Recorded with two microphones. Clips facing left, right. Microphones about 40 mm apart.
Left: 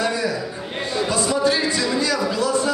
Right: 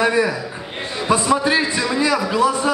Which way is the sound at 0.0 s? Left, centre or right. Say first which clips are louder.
Right 5 dB; right.